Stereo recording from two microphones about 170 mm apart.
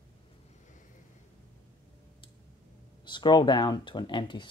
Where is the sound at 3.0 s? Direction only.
25° left (ahead or behind).